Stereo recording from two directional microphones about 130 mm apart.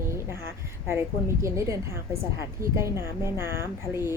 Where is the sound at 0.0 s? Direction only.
20° right (ahead or behind).